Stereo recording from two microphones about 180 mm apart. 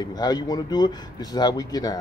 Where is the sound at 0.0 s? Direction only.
20° left (ahead or behind).